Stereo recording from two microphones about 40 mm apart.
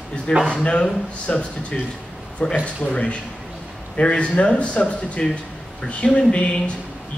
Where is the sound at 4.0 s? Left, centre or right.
Left.